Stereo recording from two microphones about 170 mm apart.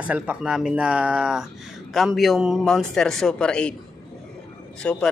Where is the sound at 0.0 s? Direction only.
10° right (ahead or behind).